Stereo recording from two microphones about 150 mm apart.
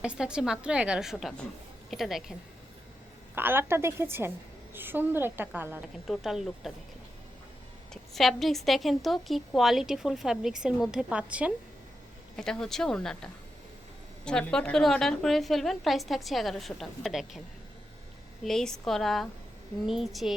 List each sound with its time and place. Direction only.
0.0 s a woman's voice: 5° right (ahead or behind)
3.3 s a woman's voice: 15° right (ahead or behind)
6.1 s a woman's voice: centre (ahead or behind)
8.1 s a woman's voice: centre (ahead or behind)
12.4 s a woman's voice: 5° left (ahead or behind)
18.4 s a woman's voice: 5° left (ahead or behind)